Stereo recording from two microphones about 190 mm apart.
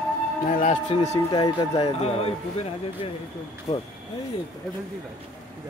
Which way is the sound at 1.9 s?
30° left (ahead or behind).